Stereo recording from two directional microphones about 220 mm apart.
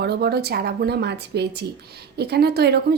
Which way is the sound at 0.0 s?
45° right (ahead or behind).